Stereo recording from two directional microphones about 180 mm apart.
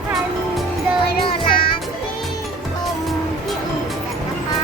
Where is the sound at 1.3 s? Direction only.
30° left (ahead or behind).